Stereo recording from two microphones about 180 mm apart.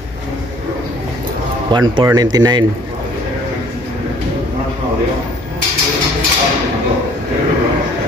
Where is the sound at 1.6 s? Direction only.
25° right (ahead or behind).